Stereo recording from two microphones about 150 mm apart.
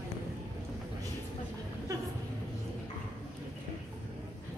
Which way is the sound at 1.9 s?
20° right (ahead or behind).